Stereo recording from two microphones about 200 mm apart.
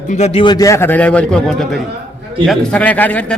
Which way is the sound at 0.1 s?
35° left (ahead or behind).